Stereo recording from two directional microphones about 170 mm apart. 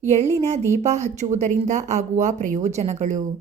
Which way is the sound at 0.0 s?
40° right (ahead or behind).